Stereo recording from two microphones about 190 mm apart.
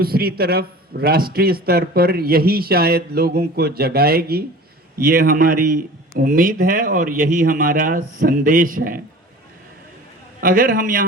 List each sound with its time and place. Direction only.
0.0 s a man's voice: 55° right (ahead or behind)
10.4 s a man's voice: 50° right (ahead or behind)